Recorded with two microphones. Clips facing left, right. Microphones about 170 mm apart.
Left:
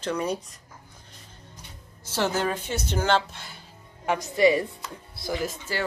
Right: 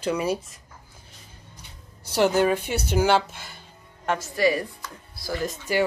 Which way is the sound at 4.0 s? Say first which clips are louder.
Even; 10° left (ahead or behind).